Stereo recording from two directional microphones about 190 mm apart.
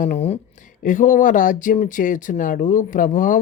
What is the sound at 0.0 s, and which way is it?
Speech, 35° left (ahead or behind).